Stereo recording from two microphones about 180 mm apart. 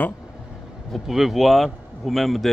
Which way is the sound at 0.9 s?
Centre (ahead or behind).